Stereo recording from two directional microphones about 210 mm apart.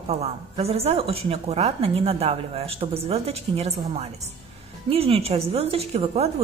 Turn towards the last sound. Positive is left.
turn(degrees=-30)  # may be behind; listen again after turning